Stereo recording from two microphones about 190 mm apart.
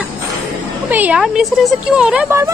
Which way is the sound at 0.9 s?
10° right (ahead or behind).